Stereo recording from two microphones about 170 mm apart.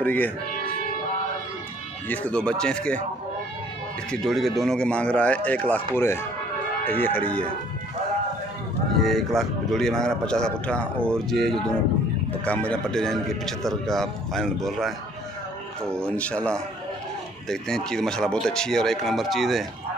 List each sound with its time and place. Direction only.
0.0 s speech: 10° left (ahead or behind)
2.0 s speech: 5° left (ahead or behind)
4.1 s speech: centre (ahead or behind)
9.0 s speech: centre (ahead or behind)
16.1 s speech: 10° left (ahead or behind)